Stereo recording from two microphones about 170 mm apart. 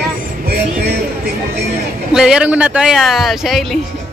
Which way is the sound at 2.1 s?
5° right (ahead or behind).